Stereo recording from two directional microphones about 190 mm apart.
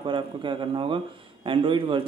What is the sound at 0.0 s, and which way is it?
A man's voice, 25° right (ahead or behind).